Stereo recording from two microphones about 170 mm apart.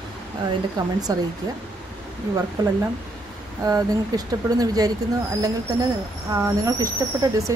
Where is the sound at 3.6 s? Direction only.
20° right (ahead or behind).